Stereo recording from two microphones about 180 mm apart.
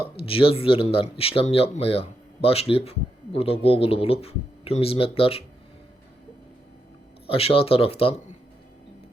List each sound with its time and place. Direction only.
0.2 s speech: 30° left (ahead or behind)
7.3 s speech: 30° left (ahead or behind)